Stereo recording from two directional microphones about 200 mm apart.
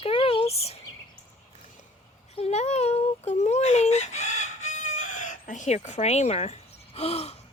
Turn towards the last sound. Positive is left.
turn(degrees=30)  # may be behind; listen again after turning